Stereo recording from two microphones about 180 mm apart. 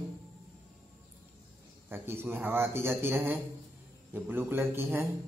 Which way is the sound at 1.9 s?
10° right (ahead or behind).